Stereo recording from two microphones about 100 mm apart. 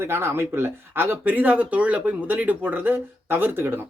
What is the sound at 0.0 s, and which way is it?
Speech, 25° right (ahead or behind).